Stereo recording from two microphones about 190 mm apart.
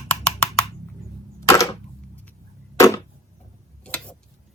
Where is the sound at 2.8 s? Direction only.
15° left (ahead or behind).